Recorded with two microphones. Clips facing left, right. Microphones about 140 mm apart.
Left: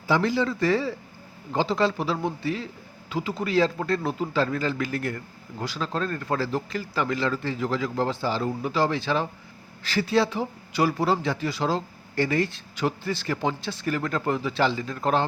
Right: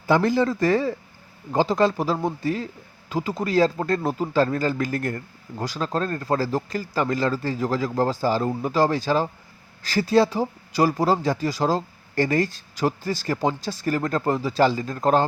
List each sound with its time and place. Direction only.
0.1 s a man's voice: 45° right (ahead or behind)